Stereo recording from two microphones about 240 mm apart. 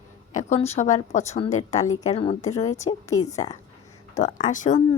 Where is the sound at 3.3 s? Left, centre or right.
Left.